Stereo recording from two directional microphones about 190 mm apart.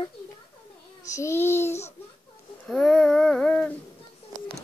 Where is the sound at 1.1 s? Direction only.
15° left (ahead or behind).